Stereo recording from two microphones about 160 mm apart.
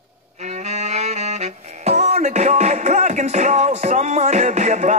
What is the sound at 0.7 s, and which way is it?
Music, 45° right (ahead or behind).